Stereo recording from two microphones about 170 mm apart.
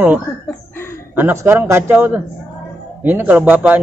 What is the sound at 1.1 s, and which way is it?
Speech, 15° right (ahead or behind).